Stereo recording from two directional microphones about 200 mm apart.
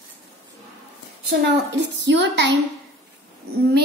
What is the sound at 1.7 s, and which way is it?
Speech, 60° right (ahead or behind).